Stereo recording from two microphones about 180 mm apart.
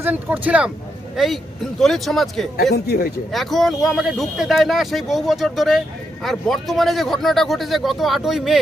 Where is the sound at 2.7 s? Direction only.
55° left (ahead or behind).